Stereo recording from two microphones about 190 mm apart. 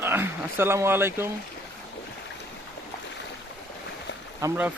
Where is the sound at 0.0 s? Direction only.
10° right (ahead or behind).